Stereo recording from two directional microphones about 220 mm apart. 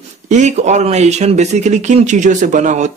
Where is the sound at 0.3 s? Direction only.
30° right (ahead or behind).